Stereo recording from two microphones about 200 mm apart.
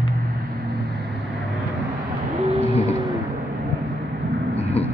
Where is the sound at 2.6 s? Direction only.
30° left (ahead or behind).